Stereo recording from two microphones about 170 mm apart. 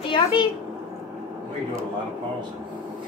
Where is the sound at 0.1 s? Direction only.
30° left (ahead or behind).